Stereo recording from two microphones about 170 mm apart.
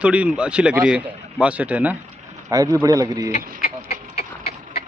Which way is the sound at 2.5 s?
20° right (ahead or behind).